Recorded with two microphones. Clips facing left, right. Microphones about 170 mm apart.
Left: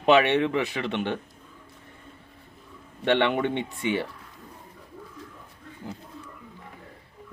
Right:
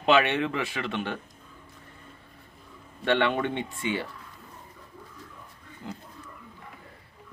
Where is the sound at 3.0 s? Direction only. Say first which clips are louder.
Left 2 dB; 20° left (ahead or behind).